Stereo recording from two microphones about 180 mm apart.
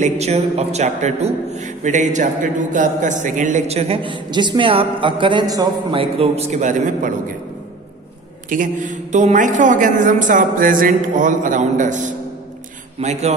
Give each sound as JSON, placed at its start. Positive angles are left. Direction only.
{"t": 0.0, "sound": "a man's voice", "side_deg": -35}
{"t": 8.5, "sound": "a man's voice", "side_deg": -45}